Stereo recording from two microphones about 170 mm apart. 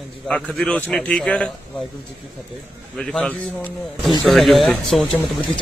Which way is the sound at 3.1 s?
5° left (ahead or behind).